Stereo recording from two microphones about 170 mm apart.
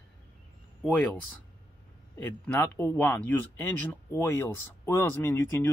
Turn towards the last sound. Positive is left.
turn(degrees=15)  # may be behind; listen again after turning